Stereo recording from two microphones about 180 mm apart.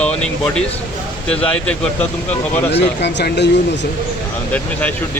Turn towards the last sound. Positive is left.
turn(degrees=70)  # may be behind; listen again after turning